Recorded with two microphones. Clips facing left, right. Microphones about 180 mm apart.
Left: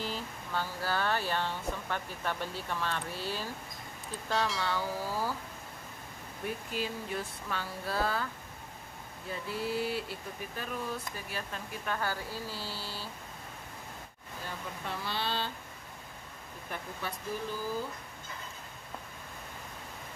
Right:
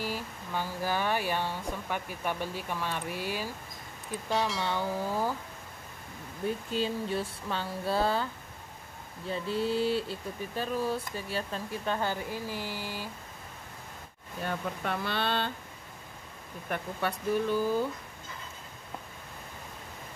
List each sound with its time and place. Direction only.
0.0 s speech: 10° right (ahead or behind)
4.3 s speech: centre (ahead or behind)
4.6 s speech: 20° right (ahead or behind)
6.4 s speech: 25° right (ahead or behind)
9.3 s speech: 25° right (ahead or behind)
14.4 s speech: 60° right (ahead or behind)
16.7 s speech: 65° right (ahead or behind)